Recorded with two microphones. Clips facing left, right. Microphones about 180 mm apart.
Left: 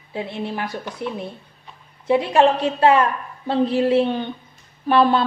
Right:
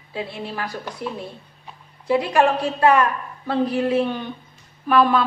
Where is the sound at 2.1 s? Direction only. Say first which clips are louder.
Left 2 dB; 20° left (ahead or behind).